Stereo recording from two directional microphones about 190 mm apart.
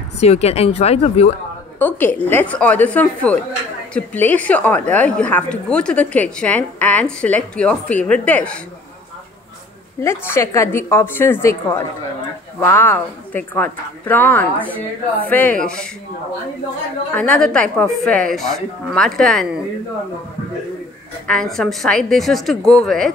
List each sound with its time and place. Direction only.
0.2 s speech: 35° left (ahead or behind)
1.8 s a woman's voice: 10° left (ahead or behind)
10.0 s a woman's voice: 15° left (ahead or behind)
17.1 s speech: 5° left (ahead or behind)
21.3 s speech: centre (ahead or behind)